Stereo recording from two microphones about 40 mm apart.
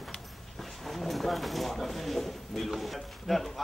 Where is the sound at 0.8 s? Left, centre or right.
Centre.